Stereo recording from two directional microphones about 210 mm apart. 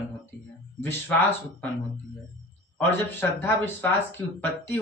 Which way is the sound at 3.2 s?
10° left (ahead or behind).